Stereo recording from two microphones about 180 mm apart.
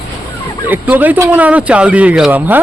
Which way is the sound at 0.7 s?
10° right (ahead or behind).